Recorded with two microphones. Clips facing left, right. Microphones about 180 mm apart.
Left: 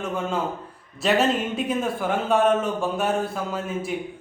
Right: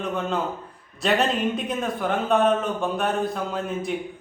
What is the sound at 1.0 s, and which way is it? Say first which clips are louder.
Speech: left 1 dB; 5° left (ahead or behind).